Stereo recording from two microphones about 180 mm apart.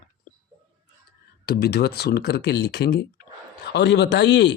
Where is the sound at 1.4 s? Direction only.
65° left (ahead or behind).